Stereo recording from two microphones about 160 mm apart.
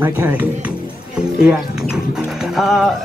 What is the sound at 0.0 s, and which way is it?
Speech, 10° right (ahead or behind).